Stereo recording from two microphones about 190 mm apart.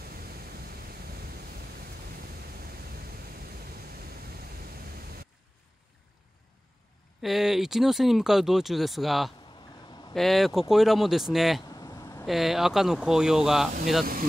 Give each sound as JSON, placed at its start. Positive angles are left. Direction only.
{"t": 7.2, "sound": "speech", "side_deg": 0}
{"t": 11.7, "sound": "a sound", "side_deg": 20}
{"t": 12.3, "sound": "speech", "side_deg": 0}